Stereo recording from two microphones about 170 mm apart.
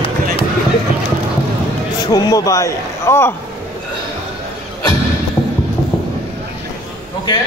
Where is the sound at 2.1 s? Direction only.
20° left (ahead or behind).